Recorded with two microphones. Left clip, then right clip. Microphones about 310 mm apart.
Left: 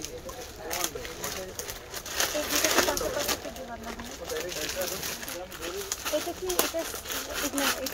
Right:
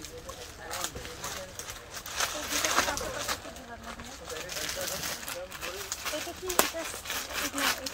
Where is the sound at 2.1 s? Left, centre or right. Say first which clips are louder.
Left 3 dB; left.